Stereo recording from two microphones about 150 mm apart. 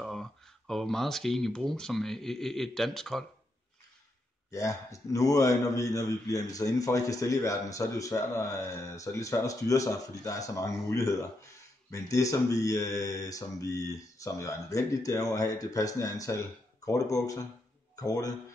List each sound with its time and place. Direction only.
0.0 s speech: centre (ahead or behind)
4.5 s a man's voice: 20° left (ahead or behind)